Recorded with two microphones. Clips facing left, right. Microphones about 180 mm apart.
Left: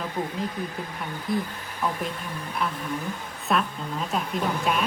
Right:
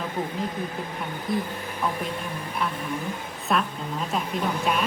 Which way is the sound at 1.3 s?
Centre (ahead or behind).